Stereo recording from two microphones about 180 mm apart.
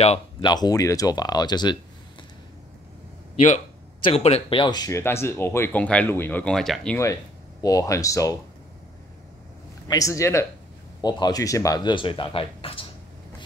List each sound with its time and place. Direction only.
0.0 s speech: 35° left (ahead or behind)
0.5 s speech: 20° left (ahead or behind)
3.3 s speech: 40° left (ahead or behind); by 7.0 s 5° left (ahead or behind)
7.6 s speech: 20° left (ahead or behind)
9.8 s speech: 20° left (ahead or behind)